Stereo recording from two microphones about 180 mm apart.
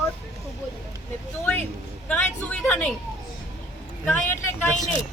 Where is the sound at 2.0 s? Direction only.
10° left (ahead or behind).